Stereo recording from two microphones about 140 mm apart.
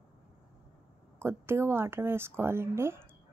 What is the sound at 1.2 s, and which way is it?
A woman's voice, 15° right (ahead or behind).